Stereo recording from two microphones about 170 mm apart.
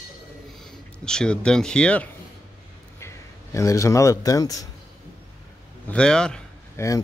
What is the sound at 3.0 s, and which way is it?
A man's voice, 15° left (ahead or behind).